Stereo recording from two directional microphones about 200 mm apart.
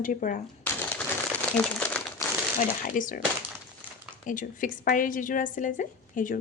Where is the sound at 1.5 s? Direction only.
5° left (ahead or behind).